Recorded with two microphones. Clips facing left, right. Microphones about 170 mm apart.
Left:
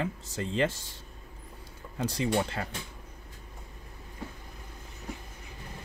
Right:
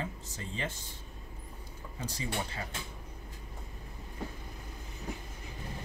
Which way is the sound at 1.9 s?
70° left (ahead or behind).